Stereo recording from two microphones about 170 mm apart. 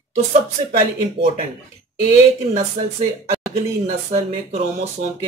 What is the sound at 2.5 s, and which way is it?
A man's voice, 40° right (ahead or behind).